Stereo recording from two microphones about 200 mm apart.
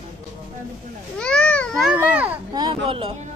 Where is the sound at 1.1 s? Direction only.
5° left (ahead or behind).